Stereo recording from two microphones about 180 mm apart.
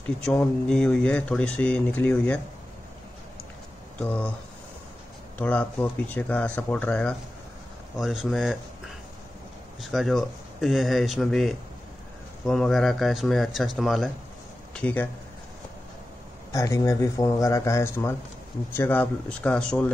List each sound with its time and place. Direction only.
0.3 s speech: 5° left (ahead or behind)
4.0 s speech: 5° left (ahead or behind)
5.4 s speech: 10° left (ahead or behind)
16.5 s speech: 15° left (ahead or behind)